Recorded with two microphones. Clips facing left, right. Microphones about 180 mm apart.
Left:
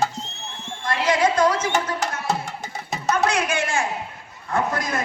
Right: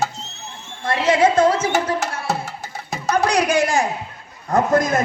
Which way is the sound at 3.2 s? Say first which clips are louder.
Right 5 dB; 35° right (ahead or behind).